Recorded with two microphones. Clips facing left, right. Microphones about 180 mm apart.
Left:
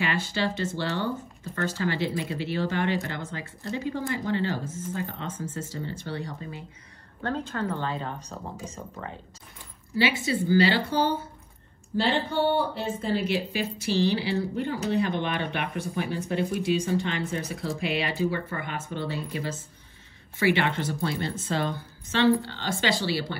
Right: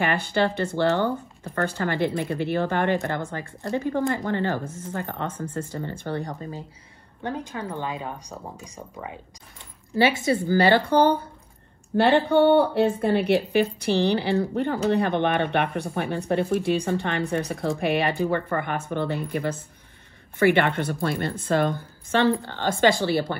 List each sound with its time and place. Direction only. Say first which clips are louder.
0.0 s speech: right 5 dB; 55° right (ahead or behind)
7.2 s speech: left 1 dB; 15° right (ahead or behind)
9.9 s speech: right 4 dB; 50° right (ahead or behind)